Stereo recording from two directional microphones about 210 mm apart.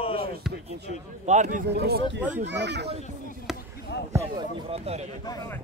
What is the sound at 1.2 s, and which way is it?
A man's voice, 35° right (ahead or behind).